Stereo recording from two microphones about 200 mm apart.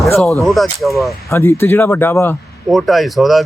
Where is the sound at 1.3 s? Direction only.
10° left (ahead or behind).